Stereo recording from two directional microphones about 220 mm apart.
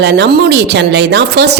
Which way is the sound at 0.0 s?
50° right (ahead or behind).